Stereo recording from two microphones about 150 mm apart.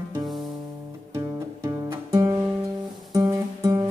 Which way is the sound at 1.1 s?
20° right (ahead or behind).